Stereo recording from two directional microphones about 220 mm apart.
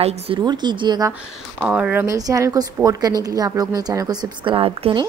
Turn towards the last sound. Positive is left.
turn(degrees=-25)  # may be behind; listen again after turning